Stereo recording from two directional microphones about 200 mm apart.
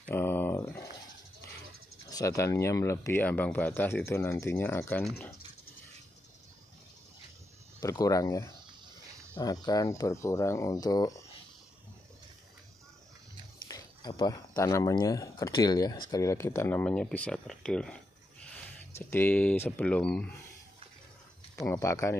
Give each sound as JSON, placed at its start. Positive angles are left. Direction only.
{"t": 0.0, "sound": "a sound", "side_deg": 10}
{"t": 2.0, "sound": "speech", "side_deg": 15}
{"t": 7.8, "sound": "speech", "side_deg": 15}
{"t": 13.7, "sound": "speech", "side_deg": 20}
{"t": 21.5, "sound": "speech", "side_deg": 15}